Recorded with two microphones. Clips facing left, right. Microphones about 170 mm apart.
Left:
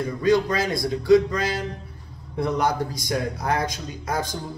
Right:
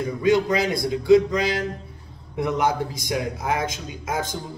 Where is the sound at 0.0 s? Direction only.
20° right (ahead or behind).